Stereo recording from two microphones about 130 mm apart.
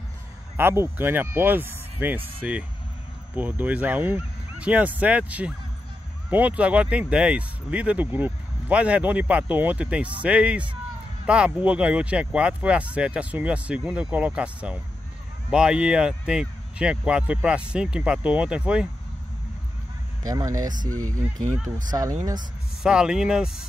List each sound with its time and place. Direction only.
0.6 s speech: 15° right (ahead or behind)
20.2 s speech: 30° right (ahead or behind)
21.9 s speech: 25° right (ahead or behind)
22.8 s speech: 5° right (ahead or behind)